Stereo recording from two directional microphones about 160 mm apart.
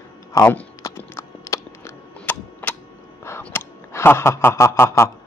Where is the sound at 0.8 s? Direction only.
15° left (ahead or behind).